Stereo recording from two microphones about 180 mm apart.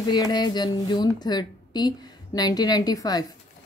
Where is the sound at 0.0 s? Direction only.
25° left (ahead or behind).